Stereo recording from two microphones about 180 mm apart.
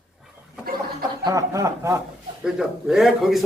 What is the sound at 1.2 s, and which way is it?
Speech, 20° right (ahead or behind).